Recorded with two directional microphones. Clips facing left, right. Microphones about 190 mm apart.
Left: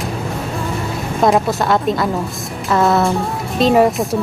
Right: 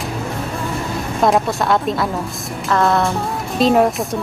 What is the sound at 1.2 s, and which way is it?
Speech, centre (ahead or behind).